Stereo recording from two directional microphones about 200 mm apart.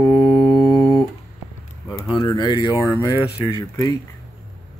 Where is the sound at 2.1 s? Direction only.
20° left (ahead or behind).